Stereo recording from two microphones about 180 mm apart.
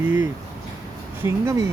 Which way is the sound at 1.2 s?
15° right (ahead or behind).